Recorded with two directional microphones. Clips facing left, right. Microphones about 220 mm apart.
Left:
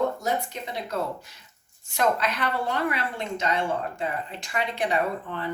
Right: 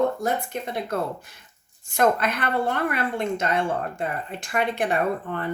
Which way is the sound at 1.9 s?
50° right (ahead or behind).